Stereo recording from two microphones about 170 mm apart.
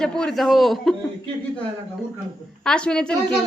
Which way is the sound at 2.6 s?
5° left (ahead or behind).